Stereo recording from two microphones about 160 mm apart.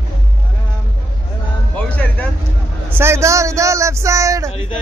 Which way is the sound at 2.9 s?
15° right (ahead or behind).